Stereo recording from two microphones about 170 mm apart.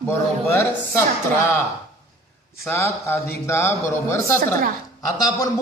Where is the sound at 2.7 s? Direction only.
15° left (ahead or behind).